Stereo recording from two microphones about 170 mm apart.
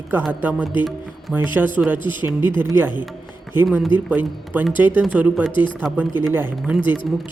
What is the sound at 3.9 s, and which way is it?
Speech, 10° right (ahead or behind).